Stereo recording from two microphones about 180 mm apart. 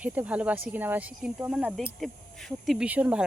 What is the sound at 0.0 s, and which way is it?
Speech, 10° right (ahead or behind).